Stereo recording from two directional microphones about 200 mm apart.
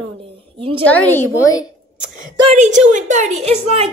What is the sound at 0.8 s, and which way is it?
Speech, 10° left (ahead or behind).